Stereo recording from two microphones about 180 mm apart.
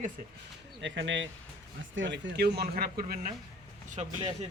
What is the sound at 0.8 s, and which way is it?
Speech, 90° right.